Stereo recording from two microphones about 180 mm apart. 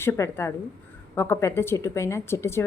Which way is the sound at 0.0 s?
15° left (ahead or behind).